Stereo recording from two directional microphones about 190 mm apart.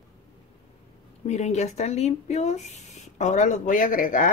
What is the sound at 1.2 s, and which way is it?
Speech, 35° left (ahead or behind).